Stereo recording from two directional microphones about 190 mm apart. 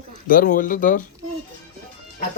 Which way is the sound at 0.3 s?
45° left (ahead or behind).